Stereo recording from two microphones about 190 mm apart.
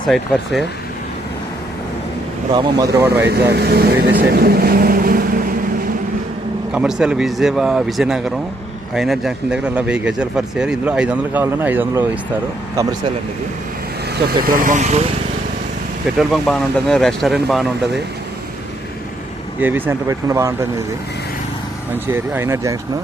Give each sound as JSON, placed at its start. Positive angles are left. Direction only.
{"t": 2.5, "sound": "speech", "side_deg": -20}
{"t": 3.2, "sound": "speech", "side_deg": -60}
{"t": 6.7, "sound": "speech", "side_deg": -5}
{"t": 14.4, "sound": "speech", "side_deg": -45}
{"t": 16.1, "sound": "speech", "side_deg": 0}
{"t": 19.5, "sound": "speech", "side_deg": -10}
{"t": 21.9, "sound": "speech", "side_deg": -10}